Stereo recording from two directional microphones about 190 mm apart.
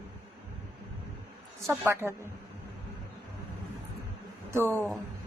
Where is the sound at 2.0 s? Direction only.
15° right (ahead or behind).